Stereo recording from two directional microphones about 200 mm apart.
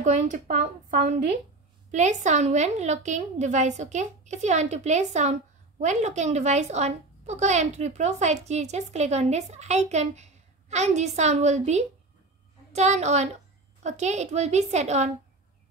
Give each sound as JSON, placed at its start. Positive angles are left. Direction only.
{"t": 0.0, "sound": "a woman's voice", "side_deg": -35}